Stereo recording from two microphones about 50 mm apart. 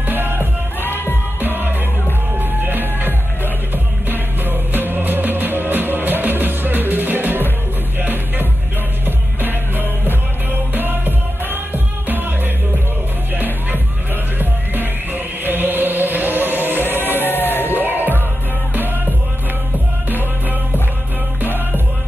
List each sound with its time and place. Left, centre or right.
0.0 s music: right
0.7 s music: left
1.4 s music: right
17.2 s crowd: left
17.6 s music: right
21.4 s music: right